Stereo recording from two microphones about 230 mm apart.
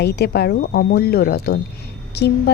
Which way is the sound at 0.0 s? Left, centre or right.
Left.